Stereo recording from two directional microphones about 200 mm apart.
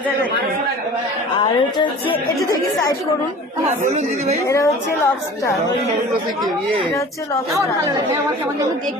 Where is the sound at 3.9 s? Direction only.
35° right (ahead or behind).